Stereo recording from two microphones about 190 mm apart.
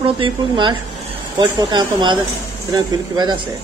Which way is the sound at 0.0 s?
25° right (ahead or behind).